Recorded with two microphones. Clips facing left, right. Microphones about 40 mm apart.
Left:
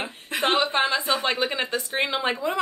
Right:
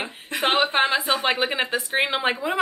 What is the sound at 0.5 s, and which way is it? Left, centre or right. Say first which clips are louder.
A woman's voice: right 2 dB; right.